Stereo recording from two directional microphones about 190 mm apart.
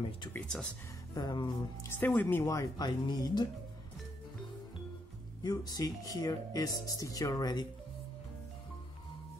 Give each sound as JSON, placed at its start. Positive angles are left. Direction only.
{"t": 0.3, "sound": "speech", "side_deg": 5}
{"t": 1.1, "sound": "speech", "side_deg": 20}
{"t": 5.4, "sound": "speech", "side_deg": 20}